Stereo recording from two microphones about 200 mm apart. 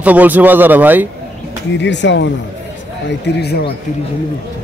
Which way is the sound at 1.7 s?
60° left (ahead or behind).